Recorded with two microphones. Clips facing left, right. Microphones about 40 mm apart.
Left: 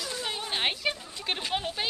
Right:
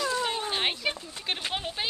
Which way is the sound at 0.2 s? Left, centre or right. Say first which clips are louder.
Right 4 dB; centre.